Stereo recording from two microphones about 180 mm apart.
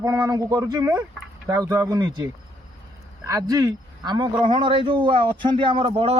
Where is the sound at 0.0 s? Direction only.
20° right (ahead or behind).